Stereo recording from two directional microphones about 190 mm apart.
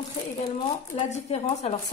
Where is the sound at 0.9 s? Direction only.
35° left (ahead or behind).